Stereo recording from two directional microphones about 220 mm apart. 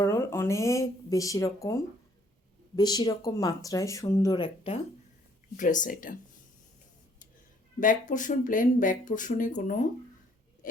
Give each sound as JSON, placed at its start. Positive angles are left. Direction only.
{"t": 0.0, "sound": "speech", "side_deg": 15}
{"t": 5.5, "sound": "speech", "side_deg": 35}
{"t": 7.8, "sound": "speech", "side_deg": 35}